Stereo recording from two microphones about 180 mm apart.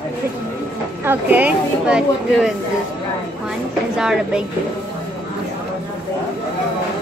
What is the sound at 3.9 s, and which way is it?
Speech, 5° right (ahead or behind).